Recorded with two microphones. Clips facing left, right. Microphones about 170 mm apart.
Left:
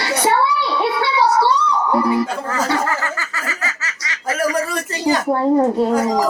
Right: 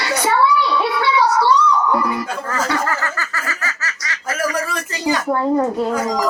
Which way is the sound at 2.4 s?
15° left (ahead or behind).